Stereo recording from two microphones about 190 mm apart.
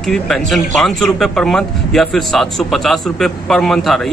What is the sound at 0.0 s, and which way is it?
Speech, centre (ahead or behind).